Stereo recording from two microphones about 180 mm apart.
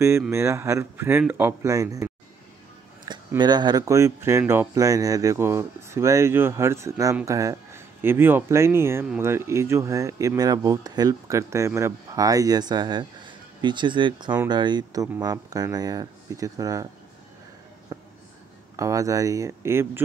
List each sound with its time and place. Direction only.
0.3 s speech: 15° right (ahead or behind)
3.3 s speech: 25° right (ahead or behind)
17.9 s a sound: 15° right (ahead or behind)
18.8 s speech: 20° right (ahead or behind)